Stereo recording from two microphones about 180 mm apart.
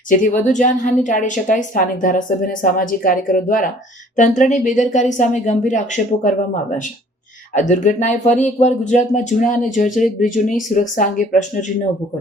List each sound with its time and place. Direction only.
0.1 s speech: 45° left (ahead or behind)
7.5 s speech: 45° left (ahead or behind)